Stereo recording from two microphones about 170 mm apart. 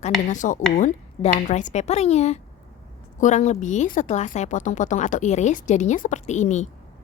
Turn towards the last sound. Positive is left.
turn(degrees=45)  # may be behind; listen again after turning